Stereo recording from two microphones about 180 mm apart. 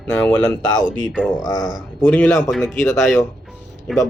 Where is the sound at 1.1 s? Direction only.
5° right (ahead or behind).